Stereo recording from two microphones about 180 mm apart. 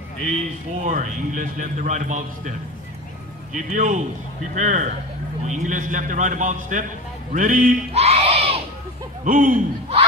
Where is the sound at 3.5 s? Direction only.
45° right (ahead or behind).